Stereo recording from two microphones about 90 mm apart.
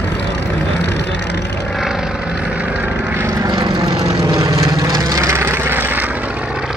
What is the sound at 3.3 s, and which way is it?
Vehicle, 50° right (ahead or behind).